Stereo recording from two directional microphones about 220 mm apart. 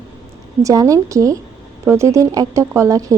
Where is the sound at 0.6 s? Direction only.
15° right (ahead or behind).